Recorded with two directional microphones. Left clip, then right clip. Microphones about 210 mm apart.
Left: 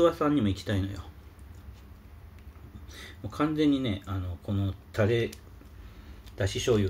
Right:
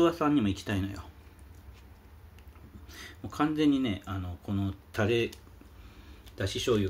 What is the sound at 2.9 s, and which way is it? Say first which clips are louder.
Speech: even; 25° right (ahead or behind).